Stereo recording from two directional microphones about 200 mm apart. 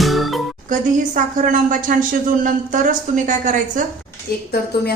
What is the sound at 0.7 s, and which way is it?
Speech, 40° right (ahead or behind).